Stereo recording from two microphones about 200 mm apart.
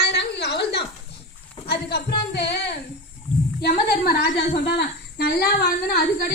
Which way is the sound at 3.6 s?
50° left (ahead or behind).